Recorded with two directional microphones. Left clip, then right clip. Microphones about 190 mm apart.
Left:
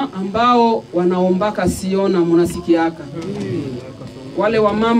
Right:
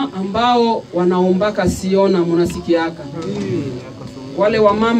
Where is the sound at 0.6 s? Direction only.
50° left (ahead or behind).